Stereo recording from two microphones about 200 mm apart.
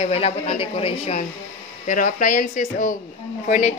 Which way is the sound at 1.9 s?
40° left (ahead or behind).